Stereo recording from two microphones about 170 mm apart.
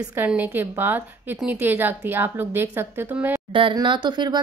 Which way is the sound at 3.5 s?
30° right (ahead or behind).